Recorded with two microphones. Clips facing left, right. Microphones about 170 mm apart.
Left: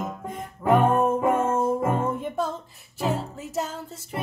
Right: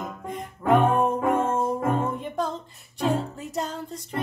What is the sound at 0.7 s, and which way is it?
Music, 5° left (ahead or behind).